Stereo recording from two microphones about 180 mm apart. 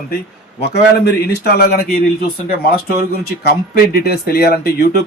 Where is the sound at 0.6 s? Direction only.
65° left (ahead or behind).